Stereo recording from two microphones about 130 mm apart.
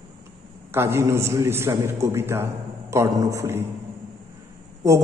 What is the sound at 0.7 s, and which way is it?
Speech, 20° right (ahead or behind).